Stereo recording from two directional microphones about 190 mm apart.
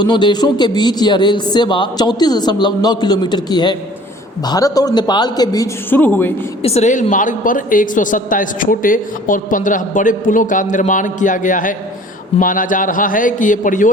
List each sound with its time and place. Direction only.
0.0 s speech: 25° left (ahead or behind)
6.6 s a woman's voice: 35° left (ahead or behind)